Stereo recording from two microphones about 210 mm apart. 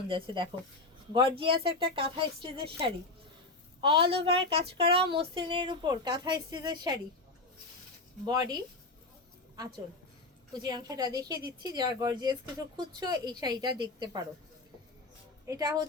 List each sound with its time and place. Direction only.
0.1 s a woman's voice: 25° right (ahead or behind)
8.2 s a woman's voice: 20° right (ahead or behind)
10.6 s a woman's voice: 20° right (ahead or behind)
15.4 s a woman's voice: 15° right (ahead or behind)